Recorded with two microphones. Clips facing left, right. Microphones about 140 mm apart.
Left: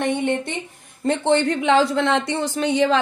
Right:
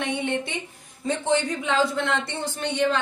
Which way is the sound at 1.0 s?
65° left (ahead or behind).